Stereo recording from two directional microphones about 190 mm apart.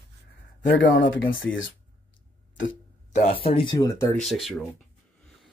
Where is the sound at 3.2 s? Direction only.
30° left (ahead or behind).